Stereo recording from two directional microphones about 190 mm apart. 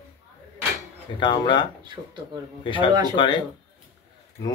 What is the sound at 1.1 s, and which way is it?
Speech, 25° left (ahead or behind).